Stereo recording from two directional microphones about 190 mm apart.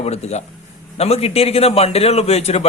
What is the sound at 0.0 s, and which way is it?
A man's voice, 35° left (ahead or behind).